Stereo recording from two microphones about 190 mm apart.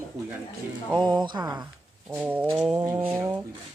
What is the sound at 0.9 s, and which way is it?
Speech, 20° right (ahead or behind).